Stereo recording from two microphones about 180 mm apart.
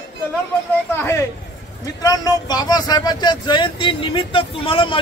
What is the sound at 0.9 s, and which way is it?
Speech, 15° left (ahead or behind).